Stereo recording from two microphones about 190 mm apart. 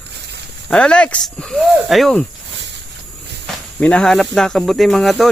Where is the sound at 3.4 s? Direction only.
5° left (ahead or behind).